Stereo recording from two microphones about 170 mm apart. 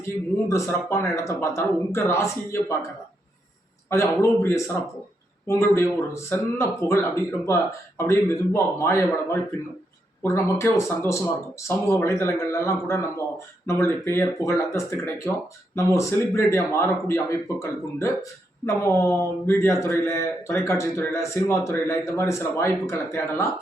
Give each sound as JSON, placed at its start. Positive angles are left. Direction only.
{"t": 0.0, "sound": "a man's voice", "side_deg": 15}
{"t": 3.8, "sound": "a man's voice", "side_deg": 15}